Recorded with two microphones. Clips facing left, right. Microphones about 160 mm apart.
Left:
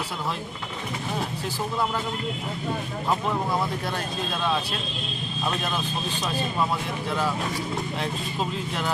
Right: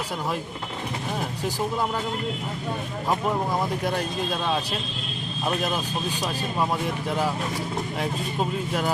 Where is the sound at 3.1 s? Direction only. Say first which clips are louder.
Right 1 dB; 15° right (ahead or behind).